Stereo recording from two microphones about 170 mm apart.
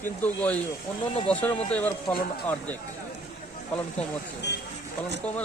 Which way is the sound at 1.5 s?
35° left (ahead or behind).